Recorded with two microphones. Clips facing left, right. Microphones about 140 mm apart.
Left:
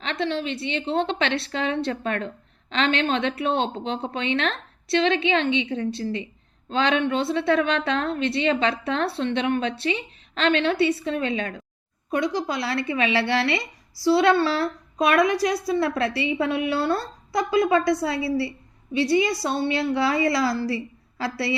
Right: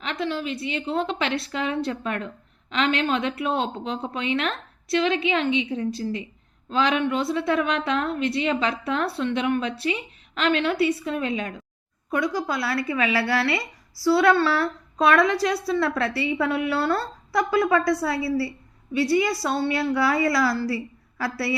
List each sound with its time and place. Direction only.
0.0 s a woman's voice: 30° left (ahead or behind)